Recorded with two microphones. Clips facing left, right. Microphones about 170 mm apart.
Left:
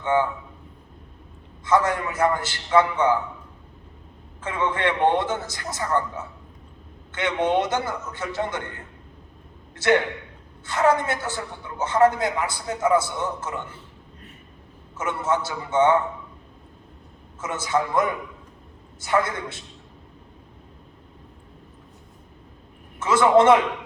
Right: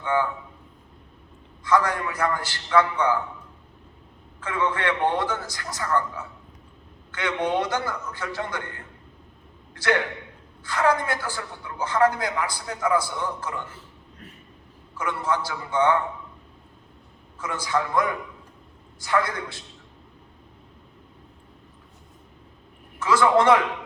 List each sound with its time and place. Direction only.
0.0 s a man's voice: 25° left (ahead or behind)
1.6 s a man's voice: 25° left (ahead or behind)
4.4 s a man's voice: 20° left (ahead or behind)
10.7 s a man's voice: 25° left (ahead or behind)
14.9 s a man's voice: 25° left (ahead or behind)
17.4 s a man's voice: 25° left (ahead or behind)
23.0 s a man's voice: 25° left (ahead or behind)